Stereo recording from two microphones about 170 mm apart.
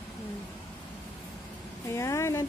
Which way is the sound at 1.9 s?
15° left (ahead or behind).